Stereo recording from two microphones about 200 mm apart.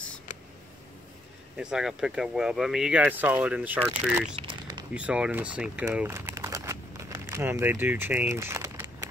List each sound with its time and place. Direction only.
1.6 s speech: 5° right (ahead or behind)
4.4 s a sound: 25° right (ahead or behind)
4.9 s speech: 5° right (ahead or behind)